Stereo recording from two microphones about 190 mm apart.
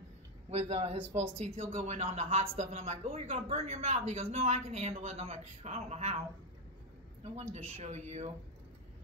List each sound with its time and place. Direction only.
0.5 s speech: 35° right (ahead or behind)
7.5 s speech: 35° right (ahead or behind)